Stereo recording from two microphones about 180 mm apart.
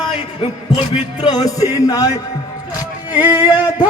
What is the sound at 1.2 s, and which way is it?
Music, 20° left (ahead or behind).